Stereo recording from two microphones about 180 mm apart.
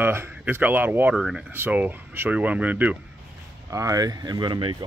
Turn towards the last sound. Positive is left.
turn(degrees=-25)  # may be behind; listen again after turning